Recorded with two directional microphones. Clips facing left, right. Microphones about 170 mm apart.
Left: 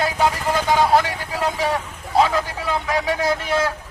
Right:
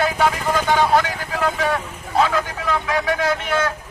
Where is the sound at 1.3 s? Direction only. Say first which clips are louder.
Right 1 dB; 10° left (ahead or behind).